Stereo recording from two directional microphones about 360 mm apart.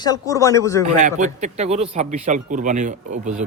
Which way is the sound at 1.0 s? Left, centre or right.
Right.